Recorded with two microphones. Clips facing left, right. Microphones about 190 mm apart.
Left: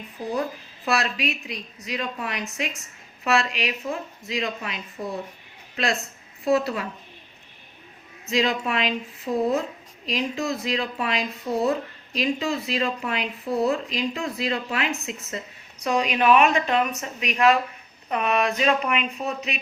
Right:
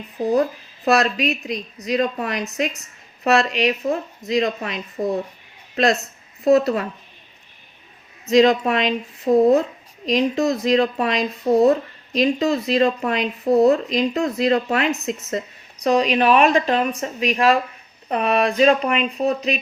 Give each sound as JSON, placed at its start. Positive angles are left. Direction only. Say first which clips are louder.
{"t": 0.9, "sound": "a woman's voice", "louder": "right 7 dB", "side_deg": -40}
{"t": 8.3, "sound": "speech", "louder": "right 9 dB", "side_deg": -40}